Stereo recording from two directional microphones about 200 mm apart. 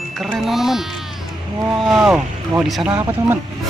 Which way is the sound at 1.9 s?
5° right (ahead or behind).